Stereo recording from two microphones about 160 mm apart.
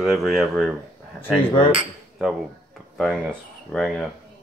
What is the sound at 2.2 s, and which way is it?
Speech, centre (ahead or behind).